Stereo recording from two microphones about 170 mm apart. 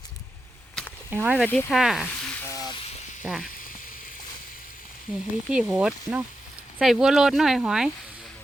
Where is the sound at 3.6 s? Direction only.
55° left (ahead or behind).